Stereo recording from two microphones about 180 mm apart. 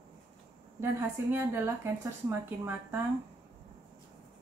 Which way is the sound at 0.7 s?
15° right (ahead or behind).